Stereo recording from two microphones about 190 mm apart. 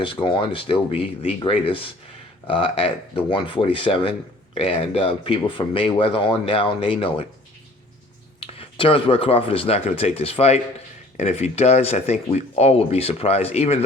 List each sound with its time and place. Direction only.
0.0 s speech: 25° left (ahead or behind)
8.4 s speech: 30° left (ahead or behind)